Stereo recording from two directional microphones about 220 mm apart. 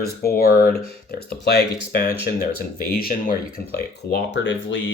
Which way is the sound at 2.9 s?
40° left (ahead or behind).